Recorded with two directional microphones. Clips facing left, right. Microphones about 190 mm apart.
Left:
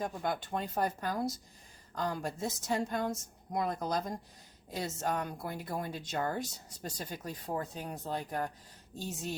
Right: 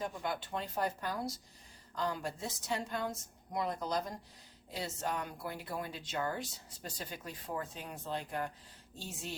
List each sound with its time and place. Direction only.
0.0 s speech: 45° left (ahead or behind)